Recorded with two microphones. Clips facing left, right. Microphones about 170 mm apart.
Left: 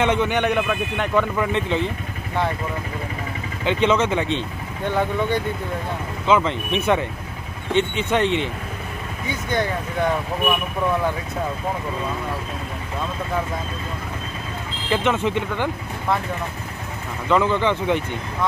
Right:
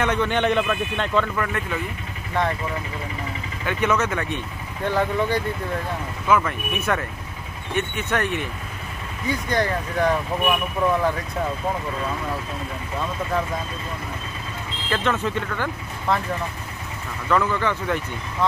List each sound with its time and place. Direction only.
0.0 s a man's voice: 20° left (ahead or behind)
3.6 s speech: 25° left (ahead or behind)
4.8 s speech: centre (ahead or behind)
6.2 s speech: 20° left (ahead or behind)
9.3 s speech: centre (ahead or behind)
14.9 s speech: 20° left (ahead or behind)
17.3 s speech: 20° left (ahead or behind)